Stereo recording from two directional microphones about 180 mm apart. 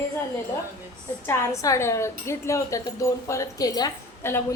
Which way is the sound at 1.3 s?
15° left (ahead or behind).